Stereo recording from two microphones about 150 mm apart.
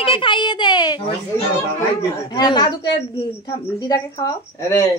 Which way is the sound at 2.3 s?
30° left (ahead or behind).